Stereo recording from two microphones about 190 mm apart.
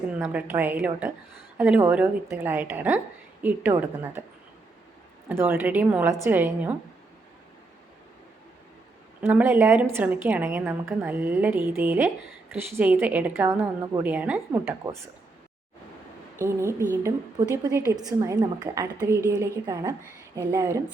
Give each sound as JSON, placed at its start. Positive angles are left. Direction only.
{"t": 0.2, "sound": "a woman's voice", "side_deg": -10}
{"t": 5.3, "sound": "a woman's voice", "side_deg": -10}
{"t": 9.2, "sound": "a woman's voice", "side_deg": -10}
{"t": 16.4, "sound": "a woman's voice", "side_deg": -15}